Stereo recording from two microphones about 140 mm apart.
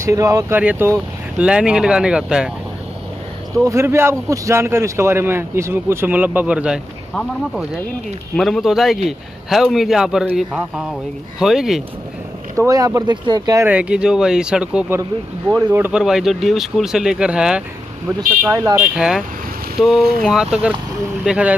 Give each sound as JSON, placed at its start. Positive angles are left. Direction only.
{"t": 0.0, "sound": "a man's voice", "side_deg": -25}
{"t": 3.6, "sound": "a man's voice", "side_deg": -20}
{"t": 8.4, "sound": "a man's voice", "side_deg": 0}
{"t": 12.5, "sound": "speech", "side_deg": -25}
{"t": 13.7, "sound": "a man's voice", "side_deg": -10}